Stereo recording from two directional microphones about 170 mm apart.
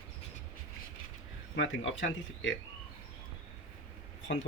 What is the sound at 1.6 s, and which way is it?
Speech, 90° left.